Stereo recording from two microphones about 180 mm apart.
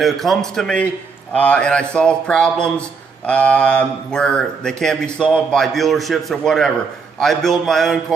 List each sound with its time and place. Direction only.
0.0 s speech: centre (ahead or behind)